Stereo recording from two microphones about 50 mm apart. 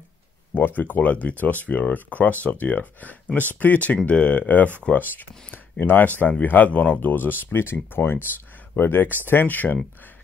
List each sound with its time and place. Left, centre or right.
0.6 s speech: left